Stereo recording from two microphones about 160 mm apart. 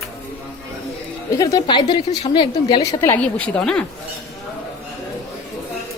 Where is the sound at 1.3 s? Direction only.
20° left (ahead or behind).